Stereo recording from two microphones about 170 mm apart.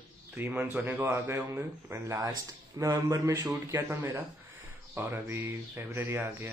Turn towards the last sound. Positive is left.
turn(degrees=-10)  # may be behind; listen again after turning